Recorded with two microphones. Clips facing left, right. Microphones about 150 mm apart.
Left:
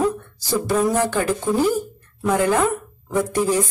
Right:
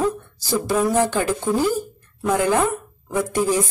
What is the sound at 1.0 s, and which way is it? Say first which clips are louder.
Speech: right 1 dB; 20° right (ahead or behind).